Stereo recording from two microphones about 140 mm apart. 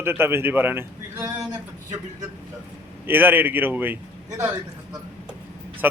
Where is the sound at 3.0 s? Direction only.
15° right (ahead or behind).